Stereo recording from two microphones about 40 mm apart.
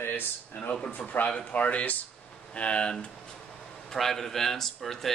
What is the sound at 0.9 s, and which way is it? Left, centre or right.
A man's voice, left.